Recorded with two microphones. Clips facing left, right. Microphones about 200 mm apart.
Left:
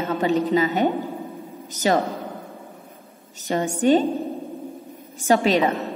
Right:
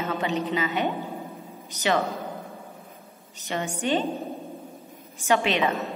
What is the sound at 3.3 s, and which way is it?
Speech, 40° left (ahead or behind).